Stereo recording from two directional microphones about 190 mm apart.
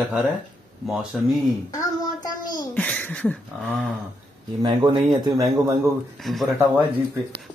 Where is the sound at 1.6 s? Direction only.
20° left (ahead or behind).